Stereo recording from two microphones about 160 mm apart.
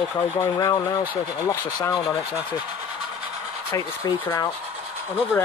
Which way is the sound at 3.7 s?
20° left (ahead or behind).